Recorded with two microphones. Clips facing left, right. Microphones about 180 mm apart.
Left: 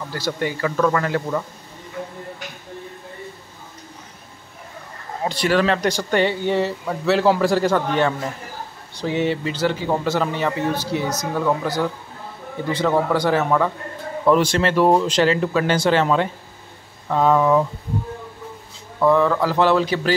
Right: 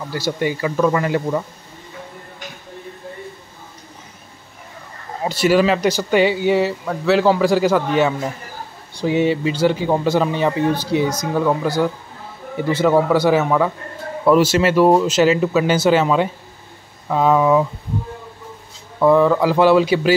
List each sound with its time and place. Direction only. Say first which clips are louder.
0.1 s a man's voice: right 4 dB; 15° right (ahead or behind)
5.2 s a man's voice: right 4 dB; 5° right (ahead or behind)
18.9 s a man's voice: right 3 dB; 10° right (ahead or behind)